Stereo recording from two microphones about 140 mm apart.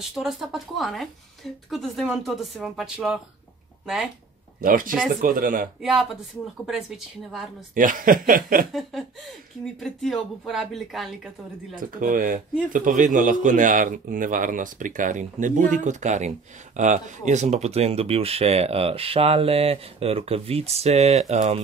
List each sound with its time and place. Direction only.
0.1 s speech: centre (ahead or behind)
4.6 s speech: 85° right
5.8 s speech: centre (ahead or behind)
7.7 s speech: 75° right (ahead or behind)
9.8 s speech: 5° left (ahead or behind)
12.0 s a man's voice: 80° right; by 21.5 s 55° right (ahead or behind)